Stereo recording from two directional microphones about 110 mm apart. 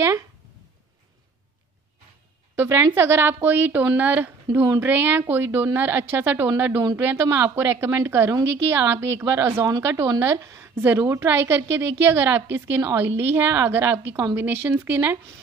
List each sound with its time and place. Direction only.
2.5 s a woman's voice: 20° right (ahead or behind)
14.1 s a woman's voice: 30° right (ahead or behind)
14.4 s a woman's voice: 20° right (ahead or behind)